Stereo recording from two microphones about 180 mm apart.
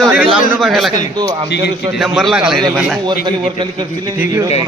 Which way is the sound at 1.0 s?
20° right (ahead or behind).